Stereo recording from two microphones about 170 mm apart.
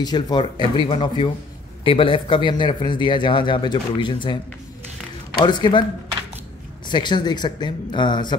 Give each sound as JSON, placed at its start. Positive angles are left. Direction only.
{"t": 0.0, "sound": "speech", "side_deg": 25}
{"t": 5.4, "sound": "speech", "side_deg": 25}
{"t": 6.9, "sound": "speech", "side_deg": 25}